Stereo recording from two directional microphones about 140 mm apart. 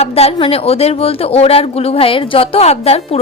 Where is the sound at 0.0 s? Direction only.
45° left (ahead or behind).